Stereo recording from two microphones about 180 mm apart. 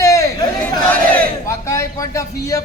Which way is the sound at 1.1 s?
15° left (ahead or behind).